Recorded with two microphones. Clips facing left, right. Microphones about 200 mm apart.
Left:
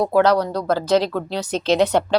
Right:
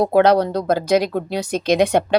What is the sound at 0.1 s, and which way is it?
A woman's voice, 20° right (ahead or behind).